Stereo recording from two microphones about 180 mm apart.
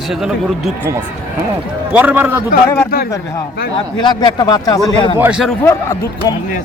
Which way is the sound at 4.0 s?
25° left (ahead or behind).